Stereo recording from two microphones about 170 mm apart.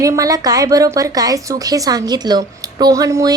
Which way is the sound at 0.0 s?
20° right (ahead or behind).